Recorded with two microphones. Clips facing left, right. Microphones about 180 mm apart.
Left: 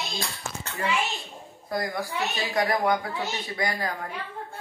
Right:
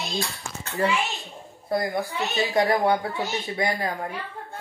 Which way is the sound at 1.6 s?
25° right (ahead or behind).